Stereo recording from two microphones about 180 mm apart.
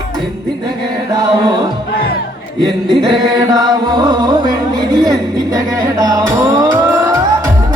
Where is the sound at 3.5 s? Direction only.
20° right (ahead or behind).